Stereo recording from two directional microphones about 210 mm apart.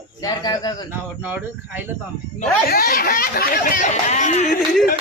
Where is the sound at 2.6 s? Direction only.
45° left (ahead or behind).